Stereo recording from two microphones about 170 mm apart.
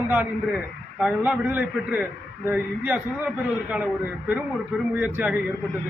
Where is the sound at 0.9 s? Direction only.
5° right (ahead or behind).